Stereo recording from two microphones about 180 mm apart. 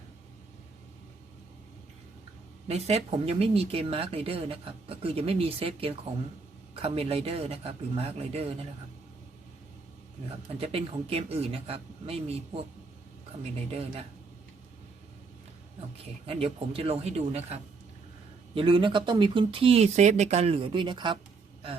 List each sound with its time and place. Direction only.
2.6 s speech: 35° right (ahead or behind)
10.2 s speech: 35° right (ahead or behind)
16.2 s speech: 30° right (ahead or behind)